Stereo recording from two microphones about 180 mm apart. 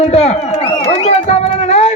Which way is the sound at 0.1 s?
35° left (ahead or behind).